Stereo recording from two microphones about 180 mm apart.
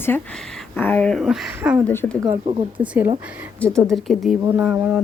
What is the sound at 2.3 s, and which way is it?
Speech, 30° right (ahead or behind).